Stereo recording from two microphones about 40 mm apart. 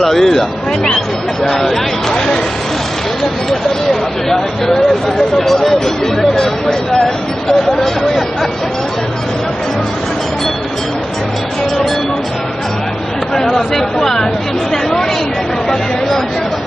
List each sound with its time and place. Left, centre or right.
0.0 s speech: centre
3.4 s speech: centre
6.3 s speech: centre
13.3 s speech: centre